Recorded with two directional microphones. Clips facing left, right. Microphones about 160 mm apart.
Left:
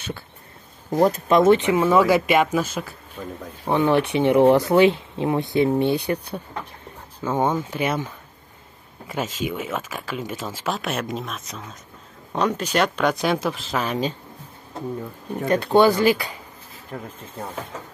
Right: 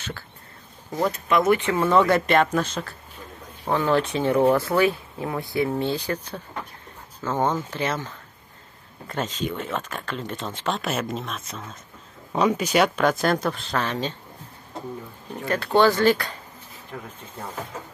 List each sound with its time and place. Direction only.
1.3 s speech: 25° left (ahead or behind)
15.4 s speech: 20° left (ahead or behind)